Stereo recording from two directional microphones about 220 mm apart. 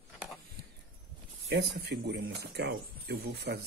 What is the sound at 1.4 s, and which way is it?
Speech, 50° right (ahead or behind).